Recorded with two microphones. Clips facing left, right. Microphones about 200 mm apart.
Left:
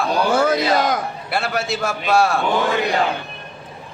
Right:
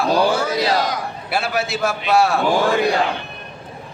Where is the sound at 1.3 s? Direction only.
Centre (ahead or behind).